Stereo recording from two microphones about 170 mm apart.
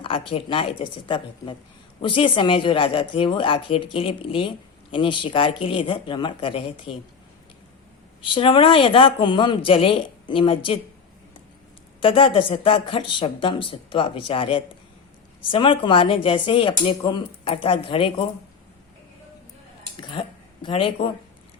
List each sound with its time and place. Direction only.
0.0 s speech: 30° left (ahead or behind)
8.2 s speech: 30° left (ahead or behind)
11.9 s speech: 30° left (ahead or behind)
20.0 s speech: 30° left (ahead or behind)